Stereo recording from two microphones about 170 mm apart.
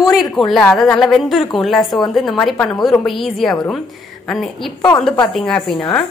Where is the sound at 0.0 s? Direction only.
20° left (ahead or behind).